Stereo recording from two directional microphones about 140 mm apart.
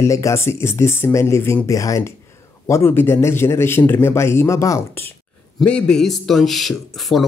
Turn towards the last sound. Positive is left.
turn(degrees=0)  # may be behind; listen again after turning